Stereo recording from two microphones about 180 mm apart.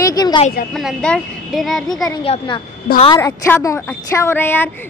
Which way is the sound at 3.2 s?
15° left (ahead or behind).